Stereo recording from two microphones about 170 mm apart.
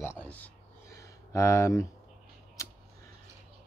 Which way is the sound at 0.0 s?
10° left (ahead or behind).